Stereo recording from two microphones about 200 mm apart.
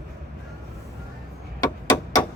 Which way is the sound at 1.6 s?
20° left (ahead or behind).